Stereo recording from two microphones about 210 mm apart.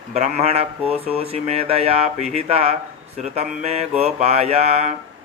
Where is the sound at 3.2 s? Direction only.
30° right (ahead or behind).